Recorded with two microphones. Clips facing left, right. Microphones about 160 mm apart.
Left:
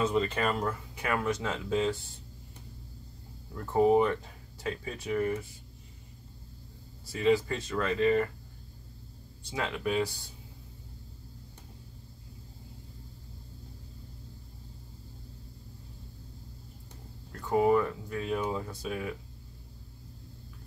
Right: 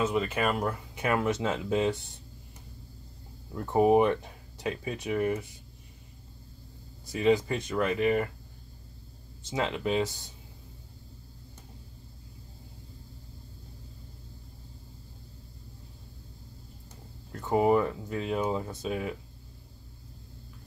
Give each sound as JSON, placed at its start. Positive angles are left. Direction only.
{"t": 0.0, "sound": "speech", "side_deg": -10}
{"t": 3.5, "sound": "speech", "side_deg": -20}
{"t": 7.1, "sound": "speech", "side_deg": -20}
{"t": 9.4, "sound": "speech", "side_deg": -25}
{"t": 17.4, "sound": "speech", "side_deg": -20}